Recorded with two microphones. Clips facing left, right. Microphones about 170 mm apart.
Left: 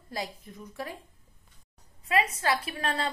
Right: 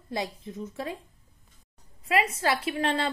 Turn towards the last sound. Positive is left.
turn(degrees=-25)  # may be behind; listen again after turning